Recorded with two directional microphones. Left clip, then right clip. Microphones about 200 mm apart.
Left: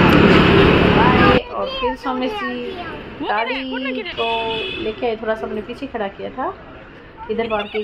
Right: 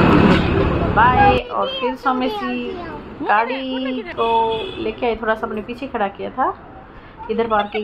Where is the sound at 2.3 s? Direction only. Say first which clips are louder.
Even; 35° right (ahead or behind).